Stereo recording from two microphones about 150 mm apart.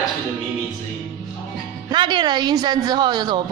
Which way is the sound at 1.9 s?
30° right (ahead or behind).